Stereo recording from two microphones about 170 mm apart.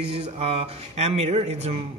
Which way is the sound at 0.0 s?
35° right (ahead or behind).